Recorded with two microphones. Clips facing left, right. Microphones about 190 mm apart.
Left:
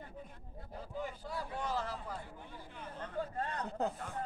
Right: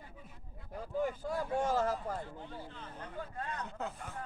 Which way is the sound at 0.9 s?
50° right (ahead or behind).